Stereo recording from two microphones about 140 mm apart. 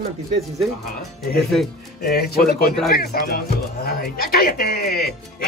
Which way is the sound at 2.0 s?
90° left.